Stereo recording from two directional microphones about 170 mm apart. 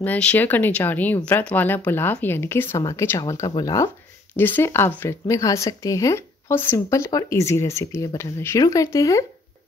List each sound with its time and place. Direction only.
0.0 s speech: 10° left (ahead or behind)